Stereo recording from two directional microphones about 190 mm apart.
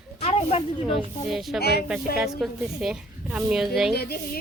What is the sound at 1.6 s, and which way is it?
Speech, 55° left (ahead or behind).